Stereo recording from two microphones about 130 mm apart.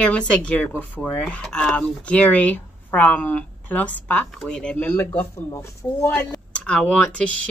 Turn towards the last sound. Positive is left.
turn(degrees=10)  # may be behind; listen again after turning